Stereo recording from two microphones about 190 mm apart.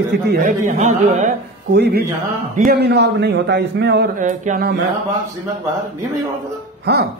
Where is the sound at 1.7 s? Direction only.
60° right (ahead or behind).